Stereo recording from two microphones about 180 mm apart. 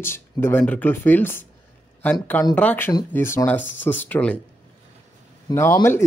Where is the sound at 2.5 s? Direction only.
10° left (ahead or behind).